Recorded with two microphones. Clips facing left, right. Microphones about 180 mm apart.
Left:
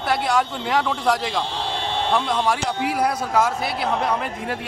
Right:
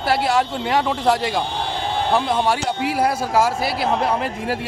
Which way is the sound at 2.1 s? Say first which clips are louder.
Right 2 dB; 25° right (ahead or behind).